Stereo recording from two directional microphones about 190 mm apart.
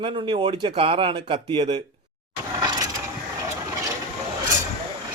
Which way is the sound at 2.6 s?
25° right (ahead or behind).